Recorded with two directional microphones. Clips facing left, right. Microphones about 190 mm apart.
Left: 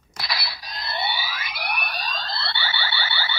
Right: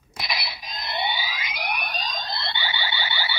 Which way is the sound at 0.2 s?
20° right (ahead or behind).